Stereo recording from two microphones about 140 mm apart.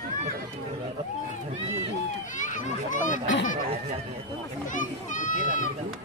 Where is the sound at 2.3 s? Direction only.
65° left (ahead or behind).